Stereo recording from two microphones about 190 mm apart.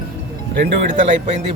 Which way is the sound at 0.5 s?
50° right (ahead or behind).